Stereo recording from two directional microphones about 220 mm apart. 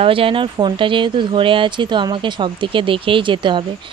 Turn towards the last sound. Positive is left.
turn(degrees=-20)  # may be behind; listen again after turning